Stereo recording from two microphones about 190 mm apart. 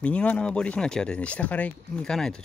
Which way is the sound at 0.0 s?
5° left (ahead or behind).